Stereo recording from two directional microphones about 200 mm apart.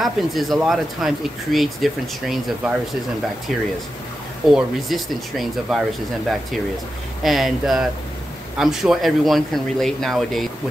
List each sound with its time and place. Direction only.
0.0 s speech: centre (ahead or behind)
4.5 s speech: centre (ahead or behind)
7.2 s speech: centre (ahead or behind)